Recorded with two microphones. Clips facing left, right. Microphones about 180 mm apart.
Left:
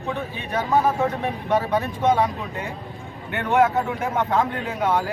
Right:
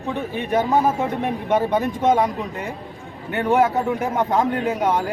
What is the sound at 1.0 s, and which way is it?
Speech, 20° right (ahead or behind).